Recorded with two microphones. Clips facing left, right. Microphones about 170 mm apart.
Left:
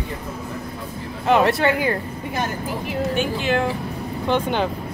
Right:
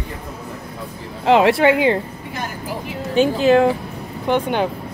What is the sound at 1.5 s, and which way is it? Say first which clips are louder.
Speech: right 5 dB; 20° right (ahead or behind).